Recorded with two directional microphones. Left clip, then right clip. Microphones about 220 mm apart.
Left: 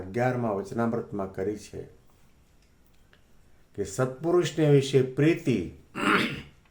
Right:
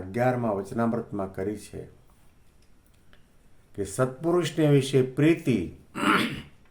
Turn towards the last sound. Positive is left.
turn(degrees=-10)  # may be behind; listen again after turning